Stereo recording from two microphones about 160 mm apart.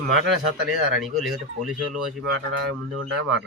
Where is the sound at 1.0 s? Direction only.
Centre (ahead or behind).